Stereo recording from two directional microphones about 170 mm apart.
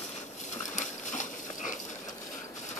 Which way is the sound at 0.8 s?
45° left (ahead or behind).